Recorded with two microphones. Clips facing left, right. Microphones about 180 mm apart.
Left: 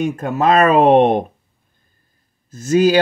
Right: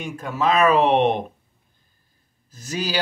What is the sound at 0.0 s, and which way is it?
Speech, 50° left (ahead or behind).